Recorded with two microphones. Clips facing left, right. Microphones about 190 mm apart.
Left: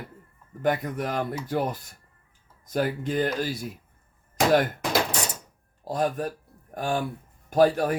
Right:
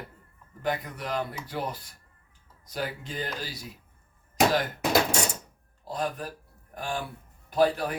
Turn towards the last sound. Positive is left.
turn(degrees=50)  # may be behind; listen again after turning